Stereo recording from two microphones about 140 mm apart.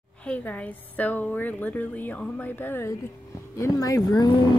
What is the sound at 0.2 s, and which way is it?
A woman's voice, 10° left (ahead or behind).